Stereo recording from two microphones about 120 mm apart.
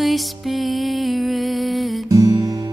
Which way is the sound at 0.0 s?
Centre (ahead or behind).